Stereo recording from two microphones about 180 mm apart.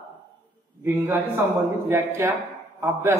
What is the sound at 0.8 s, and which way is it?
A man's voice, 15° right (ahead or behind).